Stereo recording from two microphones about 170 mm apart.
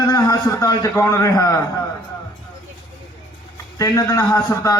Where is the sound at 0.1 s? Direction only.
20° left (ahead or behind).